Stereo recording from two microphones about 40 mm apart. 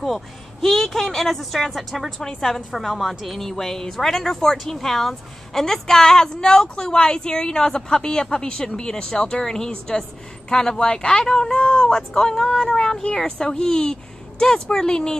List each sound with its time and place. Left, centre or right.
0.0 s speech: centre
2.1 s a woman's voice: centre
2.7 s a woman's voice: centre